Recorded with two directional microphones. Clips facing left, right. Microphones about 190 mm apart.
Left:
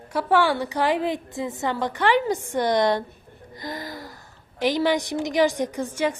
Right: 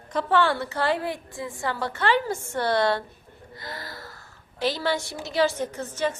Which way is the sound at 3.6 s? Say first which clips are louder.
Left 6 dB; 15° left (ahead or behind).